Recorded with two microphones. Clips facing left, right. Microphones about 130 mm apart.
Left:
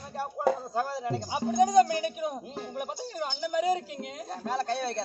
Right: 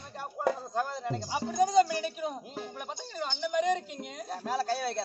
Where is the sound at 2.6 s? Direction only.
10° left (ahead or behind).